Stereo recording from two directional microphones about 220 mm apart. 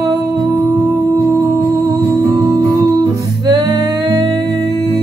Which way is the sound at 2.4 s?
15° right (ahead or behind).